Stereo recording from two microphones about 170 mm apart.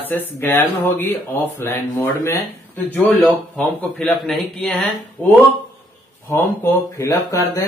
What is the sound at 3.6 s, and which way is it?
Speech, 5° left (ahead or behind).